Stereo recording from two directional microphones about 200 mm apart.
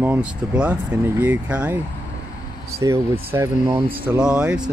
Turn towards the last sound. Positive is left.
turn(degrees=-5)  # may be behind; listen again after turning